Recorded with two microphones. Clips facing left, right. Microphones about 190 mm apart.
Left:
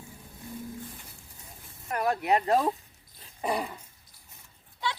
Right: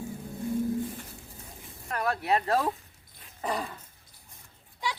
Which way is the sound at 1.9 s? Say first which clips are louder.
Left 2 dB; 20° left (ahead or behind).